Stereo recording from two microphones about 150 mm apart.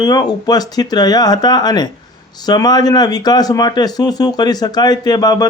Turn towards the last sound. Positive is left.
turn(degrees=25)  # may be behind; listen again after turning